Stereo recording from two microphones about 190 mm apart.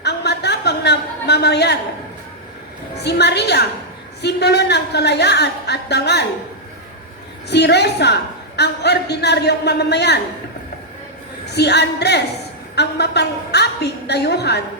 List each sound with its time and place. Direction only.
0.0 s a sound: 60° left (ahead or behind)
3.0 s a woman's voice: 60° left (ahead or behind)
7.5 s a woman's voice: 60° left (ahead or behind)
11.5 s a woman's voice: 60° left (ahead or behind)